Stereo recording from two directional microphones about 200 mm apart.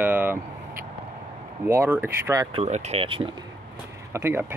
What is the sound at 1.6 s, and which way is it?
Speech, 10° right (ahead or behind).